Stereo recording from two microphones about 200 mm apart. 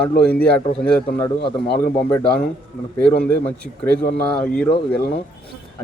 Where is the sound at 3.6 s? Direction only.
50° right (ahead or behind).